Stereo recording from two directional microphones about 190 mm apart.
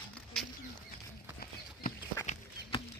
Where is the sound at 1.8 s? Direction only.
40° left (ahead or behind).